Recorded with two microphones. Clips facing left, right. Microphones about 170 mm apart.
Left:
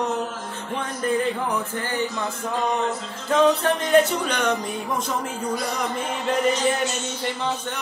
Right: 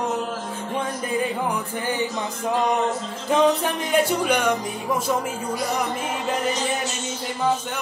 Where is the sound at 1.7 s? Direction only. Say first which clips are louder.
Right 1 dB; 15° right (ahead or behind).